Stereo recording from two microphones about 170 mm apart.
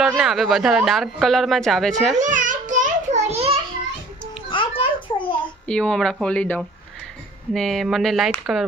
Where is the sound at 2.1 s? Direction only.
50° right (ahead or behind).